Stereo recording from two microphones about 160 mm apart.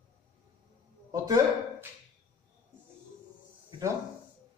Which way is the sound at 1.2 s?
20° right (ahead or behind).